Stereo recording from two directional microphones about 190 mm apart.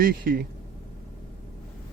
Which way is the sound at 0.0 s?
50° right (ahead or behind).